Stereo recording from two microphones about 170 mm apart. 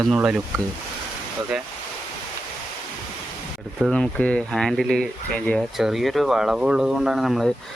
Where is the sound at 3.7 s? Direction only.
5° left (ahead or behind).